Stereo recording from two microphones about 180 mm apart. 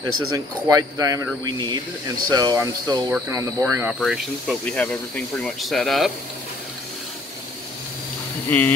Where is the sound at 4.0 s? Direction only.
Centre (ahead or behind).